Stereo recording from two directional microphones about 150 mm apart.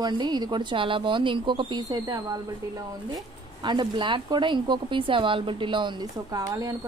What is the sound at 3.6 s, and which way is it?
Speech, 30° right (ahead or behind).